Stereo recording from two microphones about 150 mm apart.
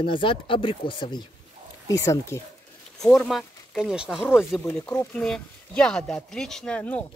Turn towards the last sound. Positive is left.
turn(degrees=10)  # may be behind; listen again after turning